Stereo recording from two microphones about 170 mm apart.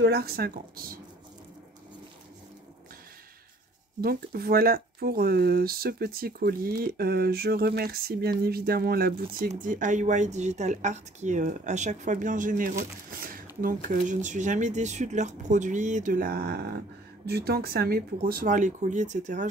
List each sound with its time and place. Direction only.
0.0 s speech: 65° right (ahead or behind)
4.0 s speech: 65° right (ahead or behind)
9.5 s speech: 50° right (ahead or behind)